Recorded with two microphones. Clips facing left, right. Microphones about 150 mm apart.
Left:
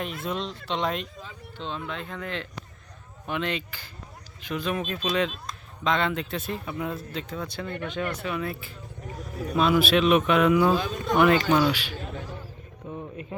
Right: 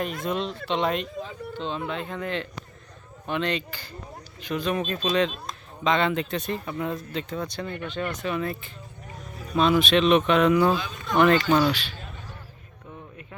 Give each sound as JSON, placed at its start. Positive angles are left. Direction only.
{"t": 0.2, "sound": "speech", "side_deg": 0}
{"t": 10.8, "sound": "speech", "side_deg": 45}
{"t": 11.1, "sound": "speech", "side_deg": 10}
{"t": 12.9, "sound": "a sound", "side_deg": 20}